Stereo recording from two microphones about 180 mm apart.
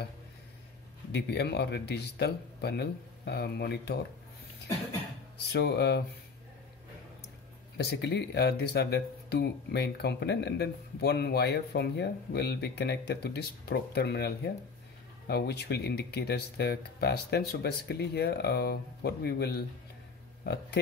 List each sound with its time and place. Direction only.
1.1 s speech: 70° left (ahead or behind)
5.5 s speech: 65° left (ahead or behind)
7.7 s speech: 65° left (ahead or behind)